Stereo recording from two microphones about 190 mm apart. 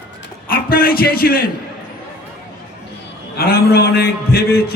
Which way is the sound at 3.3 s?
50° left (ahead or behind).